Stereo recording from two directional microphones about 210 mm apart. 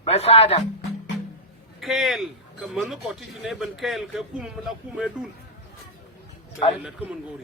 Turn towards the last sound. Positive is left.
turn(degrees=-5)  # may be behind; listen again after turning